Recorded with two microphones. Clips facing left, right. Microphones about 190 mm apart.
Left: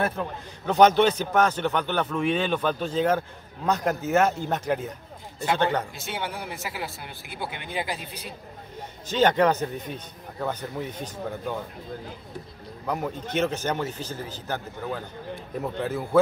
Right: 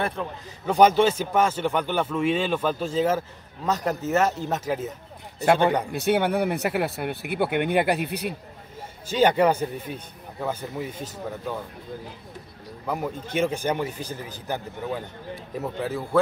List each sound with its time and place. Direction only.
0.0 s a man's voice: 5° left (ahead or behind)
0.7 s a man's voice: 10° right (ahead or behind)
5.9 s speech: 60° right (ahead or behind)
9.1 s a man's voice: 10° right (ahead or behind)
12.8 s a man's voice: 5° right (ahead or behind)
15.6 s a man's voice: centre (ahead or behind)